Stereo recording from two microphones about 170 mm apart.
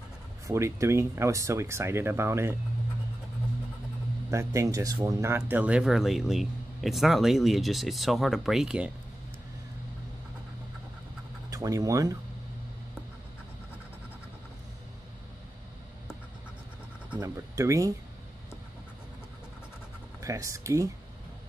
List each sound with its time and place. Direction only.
0.5 s speech: 15° right (ahead or behind)
4.3 s speech: 15° right (ahead or behind)
11.5 s speech: 20° right (ahead or behind)
17.2 s speech: 20° right (ahead or behind)
20.2 s speech: 20° right (ahead or behind)